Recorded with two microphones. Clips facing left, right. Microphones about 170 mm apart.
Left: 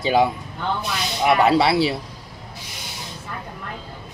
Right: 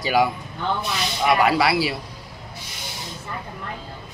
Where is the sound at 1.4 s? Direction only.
25° left (ahead or behind).